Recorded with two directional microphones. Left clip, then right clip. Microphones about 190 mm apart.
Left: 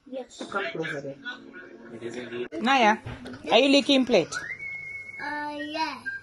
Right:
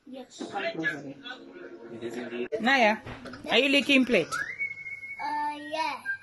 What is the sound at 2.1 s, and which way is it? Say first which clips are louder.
A woman's voice: right 1 dB; centre (ahead or behind).